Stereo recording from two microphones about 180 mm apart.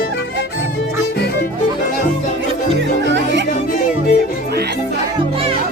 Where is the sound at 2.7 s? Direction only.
80° right.